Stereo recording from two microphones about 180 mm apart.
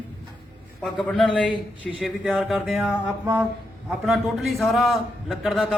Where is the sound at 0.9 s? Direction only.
Centre (ahead or behind).